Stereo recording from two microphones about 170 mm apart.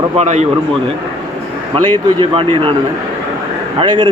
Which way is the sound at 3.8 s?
25° right (ahead or behind).